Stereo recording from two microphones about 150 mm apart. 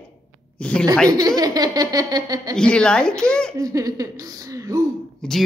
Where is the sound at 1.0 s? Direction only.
25° right (ahead or behind).